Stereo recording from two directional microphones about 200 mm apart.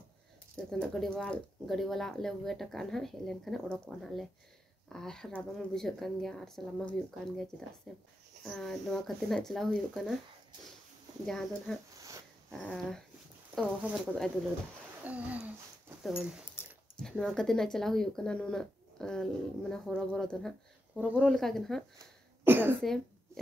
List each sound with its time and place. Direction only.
0.7 s speech: 5° left (ahead or behind)
11.2 s speech: centre (ahead or behind)
11.9 s a sound: 15° right (ahead or behind)
12.4 s speech: centre (ahead or behind)
21.9 s a sound: 10° right (ahead or behind)
22.8 s speech: centre (ahead or behind)